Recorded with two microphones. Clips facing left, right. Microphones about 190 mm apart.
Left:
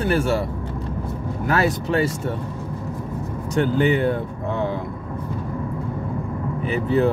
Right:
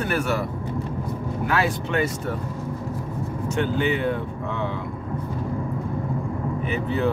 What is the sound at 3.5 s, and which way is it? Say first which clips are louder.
Speech: left 5 dB; 35° left (ahead or behind).